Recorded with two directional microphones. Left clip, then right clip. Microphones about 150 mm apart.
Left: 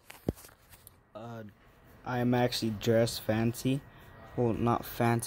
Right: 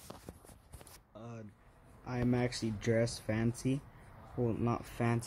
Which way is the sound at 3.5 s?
30° left (ahead or behind).